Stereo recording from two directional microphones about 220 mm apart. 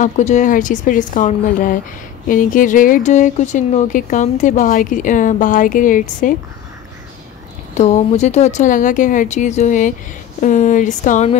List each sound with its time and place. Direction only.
0.0 s speech: 35° left (ahead or behind)
7.7 s speech: 30° left (ahead or behind)